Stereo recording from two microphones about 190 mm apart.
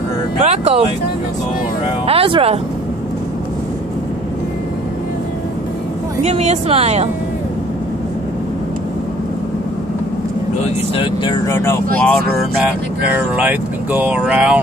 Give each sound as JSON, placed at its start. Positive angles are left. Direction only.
{"t": 0.4, "sound": "speech", "side_deg": -35}
{"t": 2.0, "sound": "speech", "side_deg": -30}
{"t": 6.2, "sound": "speech", "side_deg": -35}
{"t": 11.0, "sound": "speech", "side_deg": 20}
{"t": 13.4, "sound": "speech", "side_deg": -10}